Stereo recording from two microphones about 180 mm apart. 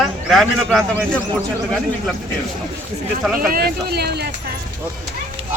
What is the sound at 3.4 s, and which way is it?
Speech, 55° right (ahead or behind).